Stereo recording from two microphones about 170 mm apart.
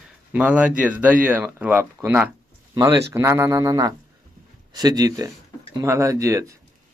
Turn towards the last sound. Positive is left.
turn(degrees=-20)  # may be behind; listen again after turning